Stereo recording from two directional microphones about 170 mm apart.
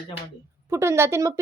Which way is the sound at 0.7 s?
15° right (ahead or behind).